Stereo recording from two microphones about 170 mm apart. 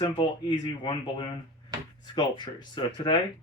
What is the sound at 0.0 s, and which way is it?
Speech, 25° left (ahead or behind).